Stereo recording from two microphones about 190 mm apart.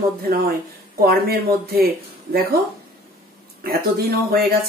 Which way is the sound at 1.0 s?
55° right (ahead or behind).